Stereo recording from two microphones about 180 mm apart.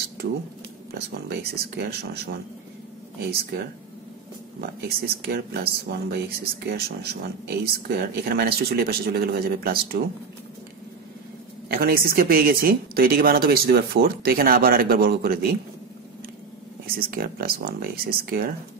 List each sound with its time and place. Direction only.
0.9 s speech: 65° right (ahead or behind)
4.6 s speech: 60° right (ahead or behind)
11.7 s speech: 55° right (ahead or behind)
16.8 s speech: 55° right (ahead or behind)